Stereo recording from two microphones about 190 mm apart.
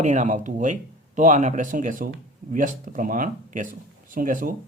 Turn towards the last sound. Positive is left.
turn(degrees=-45)  # may be behind; listen again after turning